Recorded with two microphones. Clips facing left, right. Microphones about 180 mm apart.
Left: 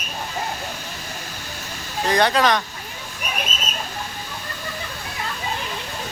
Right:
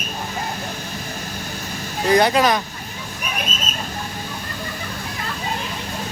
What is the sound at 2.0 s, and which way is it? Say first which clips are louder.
Speech: right 3 dB; 10° right (ahead or behind).